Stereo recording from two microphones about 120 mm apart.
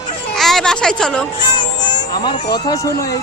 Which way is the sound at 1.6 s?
40° left (ahead or behind).